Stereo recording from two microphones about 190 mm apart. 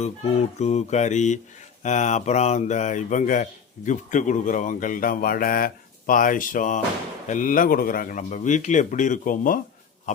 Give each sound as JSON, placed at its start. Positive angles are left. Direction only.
{"t": 0.0, "sound": "music", "side_deg": 35}
{"t": 1.8, "sound": "speech", "side_deg": 40}